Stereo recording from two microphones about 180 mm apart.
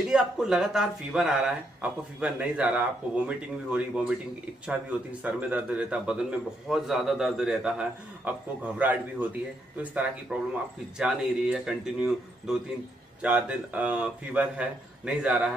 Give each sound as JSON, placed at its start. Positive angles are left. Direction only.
{"t": 0.1, "sound": "a man's voice", "side_deg": -5}